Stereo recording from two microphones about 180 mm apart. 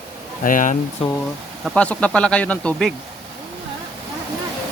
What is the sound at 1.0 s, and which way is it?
Speech, 30° left (ahead or behind).